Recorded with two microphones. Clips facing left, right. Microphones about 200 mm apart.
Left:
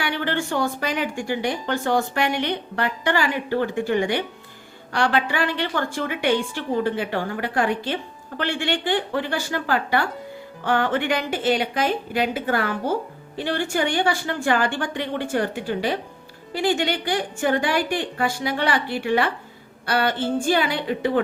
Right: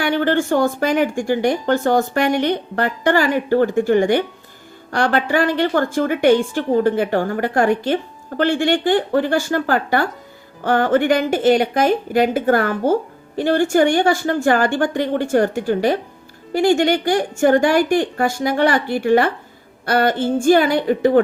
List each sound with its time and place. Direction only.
0.0 s speech: 45° right (ahead or behind)